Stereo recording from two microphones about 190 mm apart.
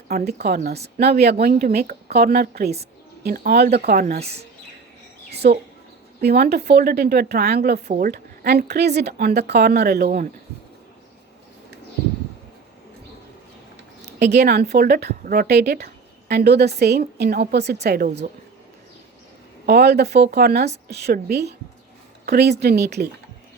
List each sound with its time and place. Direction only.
0.1 s speech: 55° right (ahead or behind)
4.2 s speech: 35° right (ahead or behind)
5.3 s a sound: 60° right (ahead or behind)
6.2 s speech: 55° right (ahead or behind)
14.0 s speech: 60° right (ahead or behind)
19.6 s speech: 60° right (ahead or behind)